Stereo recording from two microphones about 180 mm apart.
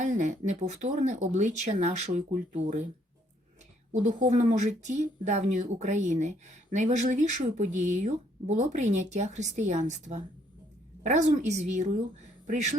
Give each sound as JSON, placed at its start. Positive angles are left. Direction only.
{"t": 0.0, "sound": "speech", "side_deg": -45}
{"t": 3.9, "sound": "speech", "side_deg": -40}